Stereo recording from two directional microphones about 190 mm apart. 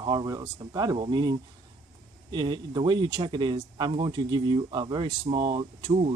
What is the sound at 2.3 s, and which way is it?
Speech, 25° right (ahead or behind).